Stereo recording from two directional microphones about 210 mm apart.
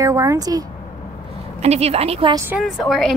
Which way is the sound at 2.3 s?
10° right (ahead or behind).